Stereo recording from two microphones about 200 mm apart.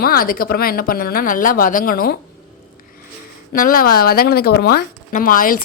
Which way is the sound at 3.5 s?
45° left (ahead or behind).